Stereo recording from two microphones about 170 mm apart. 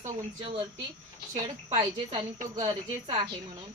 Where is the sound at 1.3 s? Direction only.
30° right (ahead or behind).